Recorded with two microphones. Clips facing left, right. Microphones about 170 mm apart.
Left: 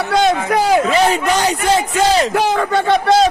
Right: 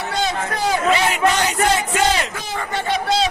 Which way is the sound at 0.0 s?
80° left.